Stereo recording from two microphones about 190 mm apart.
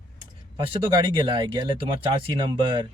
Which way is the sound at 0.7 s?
25° right (ahead or behind).